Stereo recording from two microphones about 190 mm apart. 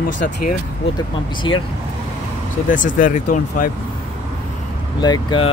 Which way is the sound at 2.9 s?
45° left (ahead or behind).